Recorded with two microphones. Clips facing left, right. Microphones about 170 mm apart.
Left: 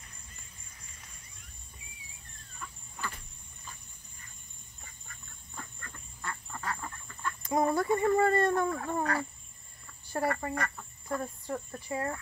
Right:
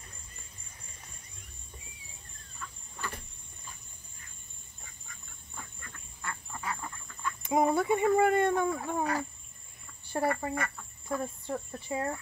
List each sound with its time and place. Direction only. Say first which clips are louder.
2.6 s squeal: even; 10° left (ahead or behind)
4.8 s duck: even; centre (ahead or behind)
7.4 s speech: right 1 dB; 15° right (ahead or behind)
10.8 s chicken: right 1 dB; 5° right (ahead or behind)
11.5 s speech: even; 10° right (ahead or behind)